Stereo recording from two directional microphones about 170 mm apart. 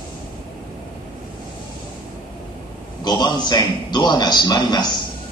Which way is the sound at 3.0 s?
25° left (ahead or behind).